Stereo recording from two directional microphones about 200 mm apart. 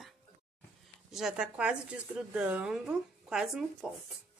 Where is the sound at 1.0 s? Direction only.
Centre (ahead or behind).